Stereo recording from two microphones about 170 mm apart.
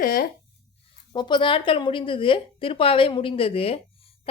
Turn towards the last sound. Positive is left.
turn(degrees=35)  # may be behind; listen again after turning